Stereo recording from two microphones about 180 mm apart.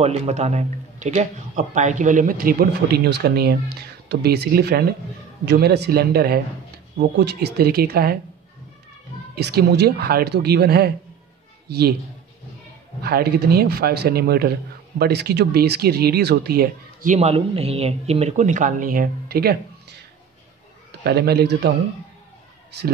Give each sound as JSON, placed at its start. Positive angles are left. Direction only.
{"t": 0.0, "sound": "a man's voice", "side_deg": -35}
{"t": 9.3, "sound": "speech", "side_deg": -60}
{"t": 13.0, "sound": "speech", "side_deg": -60}
{"t": 21.0, "sound": "speech", "side_deg": -65}